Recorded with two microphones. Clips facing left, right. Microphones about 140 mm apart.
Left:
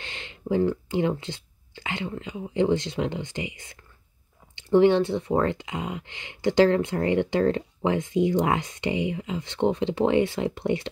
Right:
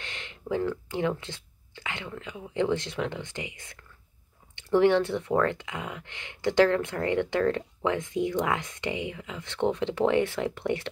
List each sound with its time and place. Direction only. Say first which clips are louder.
0.0 s speech: left 3 dB; 25° left (ahead or behind)
4.7 s speech: left 3 dB; 20° left (ahead or behind)